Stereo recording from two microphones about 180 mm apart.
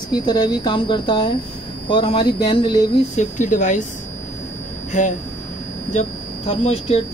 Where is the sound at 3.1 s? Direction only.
45° left (ahead or behind).